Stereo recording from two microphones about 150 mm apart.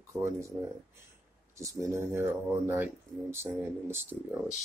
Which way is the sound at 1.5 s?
20° right (ahead or behind).